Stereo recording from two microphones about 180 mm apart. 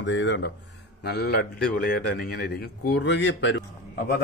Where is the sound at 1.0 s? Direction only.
65° left (ahead or behind); by 3.6 s 90° left.